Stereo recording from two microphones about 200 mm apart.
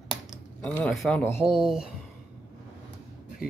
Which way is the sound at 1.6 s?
Centre (ahead or behind).